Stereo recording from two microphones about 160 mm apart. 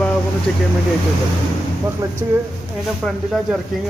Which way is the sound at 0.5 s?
5° left (ahead or behind).